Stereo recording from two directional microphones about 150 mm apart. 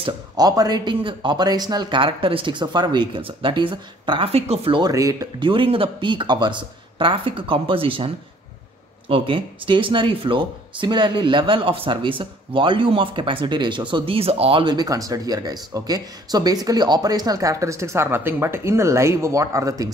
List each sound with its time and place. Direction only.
0.0 s speech: 25° right (ahead or behind)
4.9 s speech: 20° right (ahead or behind)
5.5 s speech: 35° right (ahead or behind)
9.1 s speech: 35° right (ahead or behind)